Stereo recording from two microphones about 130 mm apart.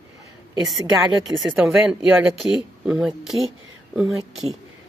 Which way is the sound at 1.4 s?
10° right (ahead or behind).